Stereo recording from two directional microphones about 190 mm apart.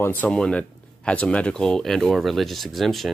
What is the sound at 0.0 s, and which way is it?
Speech, 10° left (ahead or behind).